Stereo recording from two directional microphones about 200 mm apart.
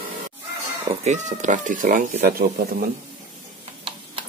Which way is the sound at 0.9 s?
35° right (ahead or behind).